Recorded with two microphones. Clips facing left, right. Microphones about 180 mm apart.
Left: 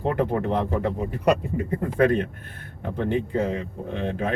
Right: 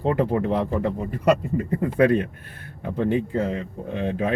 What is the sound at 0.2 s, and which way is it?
Speech, 5° right (ahead or behind).